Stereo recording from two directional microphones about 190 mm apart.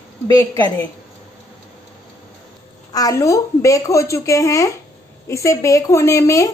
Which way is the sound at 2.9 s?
20° left (ahead or behind).